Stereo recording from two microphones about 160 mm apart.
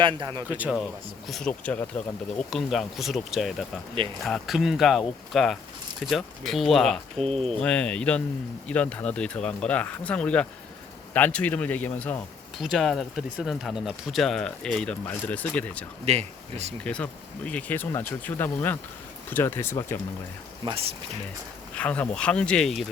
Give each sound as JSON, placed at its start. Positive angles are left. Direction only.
{"t": 0.0, "sound": "speech", "side_deg": -30}
{"t": 0.5, "sound": "speech", "side_deg": -5}
{"t": 1.3, "sound": "speech", "side_deg": 5}
{"t": 7.2, "sound": "speech", "side_deg": -40}
{"t": 7.6, "sound": "speech", "side_deg": 5}
{"t": 16.0, "sound": "speech", "side_deg": -45}
{"t": 16.8, "sound": "speech", "side_deg": 5}
{"t": 20.7, "sound": "speech", "side_deg": -35}
{"t": 21.8, "sound": "speech", "side_deg": 10}